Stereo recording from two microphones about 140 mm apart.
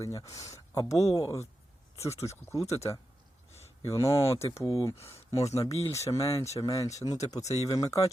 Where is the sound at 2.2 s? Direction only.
20° left (ahead or behind).